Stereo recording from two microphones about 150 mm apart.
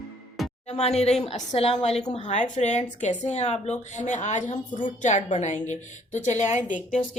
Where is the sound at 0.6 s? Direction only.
45° left (ahead or behind).